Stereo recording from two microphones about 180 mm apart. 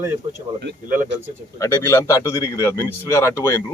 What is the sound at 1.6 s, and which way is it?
A man's voice, 15° left (ahead or behind).